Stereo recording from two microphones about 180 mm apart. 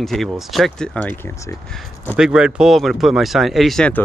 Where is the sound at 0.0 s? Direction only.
Centre (ahead or behind).